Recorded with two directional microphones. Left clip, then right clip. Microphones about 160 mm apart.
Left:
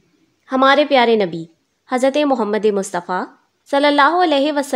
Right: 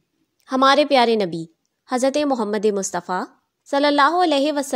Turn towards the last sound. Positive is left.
turn(degrees=-20)  # may be behind; listen again after turning